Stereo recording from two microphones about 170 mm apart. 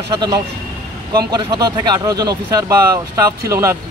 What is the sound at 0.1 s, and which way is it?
Speech, 25° right (ahead or behind).